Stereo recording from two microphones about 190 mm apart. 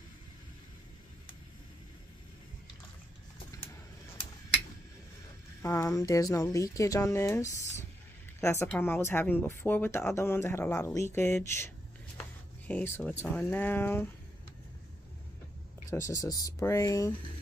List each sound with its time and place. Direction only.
5.6 s a woman's voice: 15° left (ahead or behind)
12.2 s a sound: 10° left (ahead or behind)
13.2 s a woman's voice: 10° left (ahead or behind)
15.9 s a woman's voice: 15° left (ahead or behind)